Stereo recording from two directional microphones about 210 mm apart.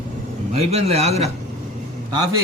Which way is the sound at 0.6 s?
30° right (ahead or behind).